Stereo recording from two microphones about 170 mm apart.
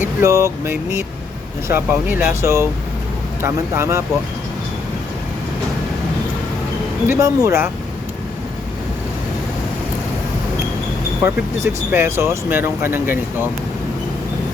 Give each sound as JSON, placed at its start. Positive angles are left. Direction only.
{"t": 0.2, "sound": "speech", "side_deg": -20}
{"t": 7.1, "sound": "speech", "side_deg": -20}
{"t": 11.2, "sound": "speech", "side_deg": -15}